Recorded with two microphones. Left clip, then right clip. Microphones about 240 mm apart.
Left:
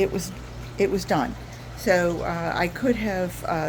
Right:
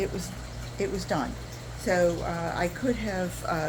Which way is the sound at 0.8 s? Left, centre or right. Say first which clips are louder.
Left 7 dB; left.